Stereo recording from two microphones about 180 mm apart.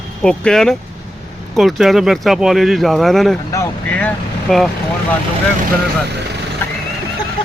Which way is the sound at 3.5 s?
10° left (ahead or behind).